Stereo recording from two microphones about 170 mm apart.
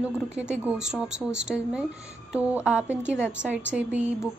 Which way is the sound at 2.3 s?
5° right (ahead or behind).